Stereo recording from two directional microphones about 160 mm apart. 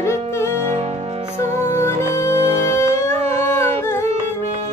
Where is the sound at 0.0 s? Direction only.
15° left (ahead or behind).